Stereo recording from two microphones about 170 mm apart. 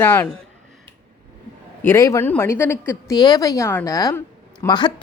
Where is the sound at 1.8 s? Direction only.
15° left (ahead or behind).